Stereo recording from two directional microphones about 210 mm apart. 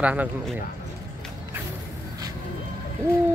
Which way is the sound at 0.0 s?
5° right (ahead or behind).